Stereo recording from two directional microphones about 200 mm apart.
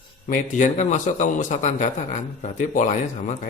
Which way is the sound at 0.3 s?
40° left (ahead or behind).